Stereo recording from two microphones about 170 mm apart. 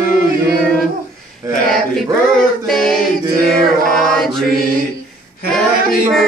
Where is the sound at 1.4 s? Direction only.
20° right (ahead or behind).